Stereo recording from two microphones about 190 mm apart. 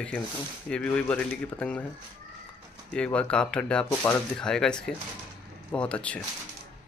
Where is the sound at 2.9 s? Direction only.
5° left (ahead or behind).